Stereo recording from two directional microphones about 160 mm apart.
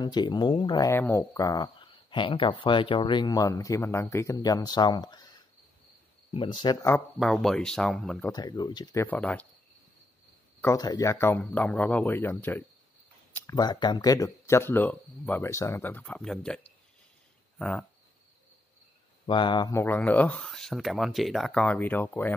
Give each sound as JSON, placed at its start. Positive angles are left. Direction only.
{"t": 0.0, "sound": "speech", "side_deg": 25}
{"t": 0.8, "sound": "speech", "side_deg": 15}
{"t": 7.2, "sound": "speech", "side_deg": 0}
{"t": 8.3, "sound": "speech", "side_deg": 25}
{"t": 9.0, "sound": "speech", "side_deg": 10}
{"t": 10.6, "sound": "speech", "side_deg": 20}
{"t": 13.6, "sound": "speech", "side_deg": 25}
{"t": 19.2, "sound": "speech", "side_deg": 30}
{"t": 19.8, "sound": "speech", "side_deg": 10}